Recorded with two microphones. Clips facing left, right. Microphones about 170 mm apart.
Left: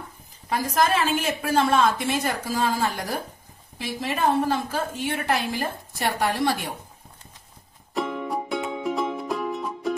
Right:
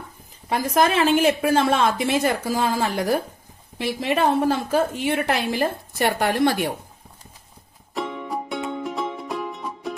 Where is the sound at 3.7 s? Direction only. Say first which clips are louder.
Right 6 dB; 70° right (ahead or behind).